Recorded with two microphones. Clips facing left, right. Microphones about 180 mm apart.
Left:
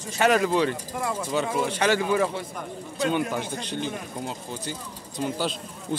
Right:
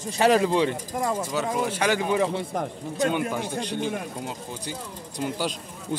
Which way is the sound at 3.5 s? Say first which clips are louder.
Right 3 dB; 10° right (ahead or behind).